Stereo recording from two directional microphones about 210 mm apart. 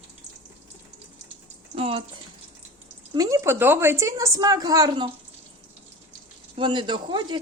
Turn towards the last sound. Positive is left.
turn(degrees=-20)  # may be behind; listen again after turning